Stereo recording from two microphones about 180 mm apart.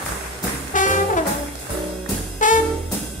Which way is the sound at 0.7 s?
45° left (ahead or behind).